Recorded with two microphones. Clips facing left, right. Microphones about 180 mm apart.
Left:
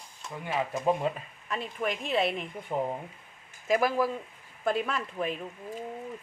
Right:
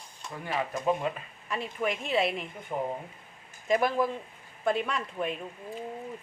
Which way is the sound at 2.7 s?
15° left (ahead or behind).